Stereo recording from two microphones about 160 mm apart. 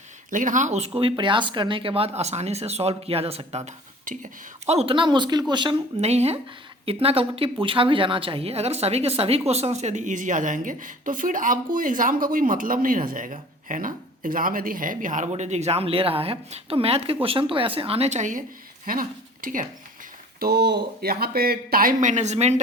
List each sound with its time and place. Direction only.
0.3 s speech: 55° right (ahead or behind); by 3.6 s 40° right (ahead or behind)
3.7 s speech: 50° right (ahead or behind); by 5.7 s 30° right (ahead or behind)
6.0 s a woman's voice: 40° right (ahead or behind)
18.9 s speech: 65° right (ahead or behind)
20.4 s speech: 85° right; by 22.6 s 45° right (ahead or behind)